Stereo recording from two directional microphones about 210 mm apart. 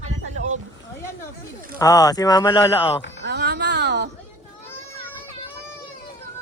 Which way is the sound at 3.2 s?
55° right (ahead or behind).